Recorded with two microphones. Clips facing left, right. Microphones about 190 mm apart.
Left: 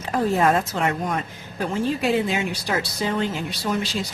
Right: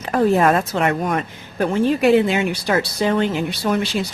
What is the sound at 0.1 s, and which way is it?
Speech, 65° right (ahead or behind).